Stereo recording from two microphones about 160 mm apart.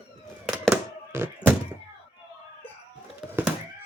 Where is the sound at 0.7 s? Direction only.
15° right (ahead or behind).